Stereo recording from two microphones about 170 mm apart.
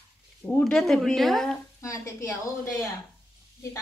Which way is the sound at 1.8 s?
20° left (ahead or behind).